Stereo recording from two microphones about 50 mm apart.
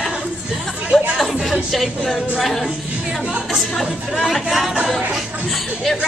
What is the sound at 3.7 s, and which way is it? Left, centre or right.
Speech, centre.